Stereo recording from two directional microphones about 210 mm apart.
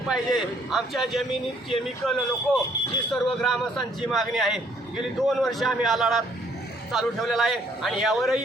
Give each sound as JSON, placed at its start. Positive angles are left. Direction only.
{"t": 0.1, "sound": "speech", "side_deg": 0}